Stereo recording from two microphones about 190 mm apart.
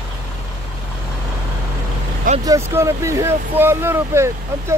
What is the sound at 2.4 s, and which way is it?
Speech, 15° right (ahead or behind).